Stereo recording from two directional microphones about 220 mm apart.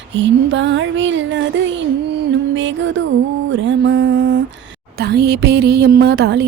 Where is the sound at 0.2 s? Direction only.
55° right (ahead or behind).